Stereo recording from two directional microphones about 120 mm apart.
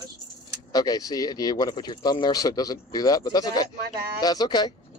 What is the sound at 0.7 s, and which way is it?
Speech, 35° left (ahead or behind).